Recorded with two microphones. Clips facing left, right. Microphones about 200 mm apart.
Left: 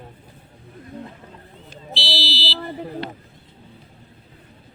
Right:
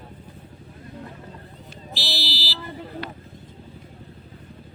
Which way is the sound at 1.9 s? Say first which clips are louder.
Left 4 dB; 45° right (ahead or behind).